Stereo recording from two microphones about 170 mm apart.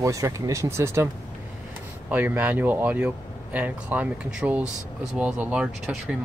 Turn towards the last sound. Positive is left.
turn(degrees=-5)  # may be behind; listen again after turning